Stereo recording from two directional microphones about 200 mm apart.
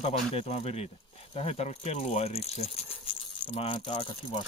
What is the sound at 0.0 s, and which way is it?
Speech, 30° left (ahead or behind).